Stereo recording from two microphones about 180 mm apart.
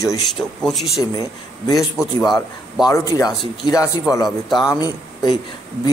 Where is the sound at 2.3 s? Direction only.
20° left (ahead or behind).